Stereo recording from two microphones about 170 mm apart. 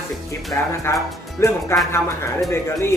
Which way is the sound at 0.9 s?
15° left (ahead or behind).